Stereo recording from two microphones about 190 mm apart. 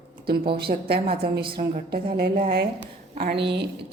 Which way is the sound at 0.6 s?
55° right (ahead or behind).